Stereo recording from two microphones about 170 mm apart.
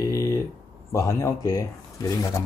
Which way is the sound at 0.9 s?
20° left (ahead or behind).